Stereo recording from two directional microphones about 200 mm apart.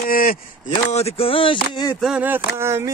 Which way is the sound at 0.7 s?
30° left (ahead or behind).